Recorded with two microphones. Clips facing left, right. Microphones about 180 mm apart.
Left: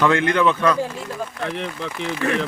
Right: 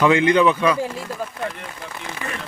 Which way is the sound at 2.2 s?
70° left (ahead or behind).